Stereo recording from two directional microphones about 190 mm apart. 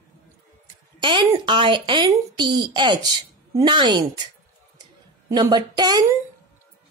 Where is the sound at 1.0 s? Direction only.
25° right (ahead or behind).